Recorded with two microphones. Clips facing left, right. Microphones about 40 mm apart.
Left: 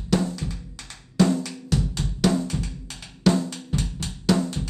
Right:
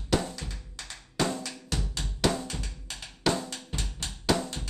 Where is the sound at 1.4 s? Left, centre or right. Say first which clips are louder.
Left 8 dB; centre.